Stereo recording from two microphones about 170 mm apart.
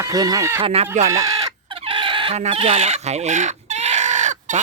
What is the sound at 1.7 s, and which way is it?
Chicken, 30° right (ahead or behind).